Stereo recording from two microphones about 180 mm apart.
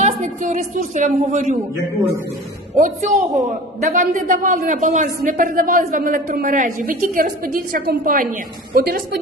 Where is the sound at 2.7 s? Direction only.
45° right (ahead or behind).